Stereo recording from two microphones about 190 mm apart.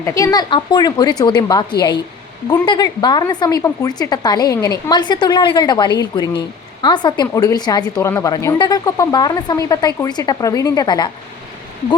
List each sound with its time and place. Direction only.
0.0 s a woman's voice: 15° left (ahead or behind)